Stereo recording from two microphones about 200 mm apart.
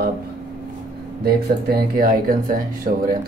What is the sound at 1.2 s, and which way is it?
Speech, 50° right (ahead or behind).